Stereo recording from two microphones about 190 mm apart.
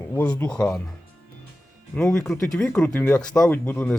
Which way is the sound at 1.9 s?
5° left (ahead or behind).